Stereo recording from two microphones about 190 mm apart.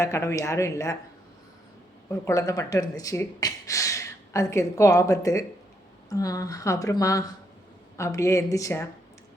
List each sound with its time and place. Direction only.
0.0 s speech: 15° left (ahead or behind)
2.0 s speech: 15° left (ahead or behind)